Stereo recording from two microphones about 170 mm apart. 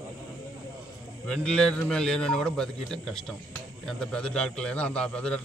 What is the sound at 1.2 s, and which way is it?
A man's voice, 5° left (ahead or behind).